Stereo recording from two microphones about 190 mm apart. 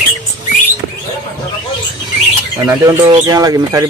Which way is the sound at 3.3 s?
20° right (ahead or behind).